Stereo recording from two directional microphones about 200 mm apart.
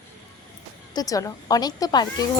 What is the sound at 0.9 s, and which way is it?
Speech, 15° left (ahead or behind).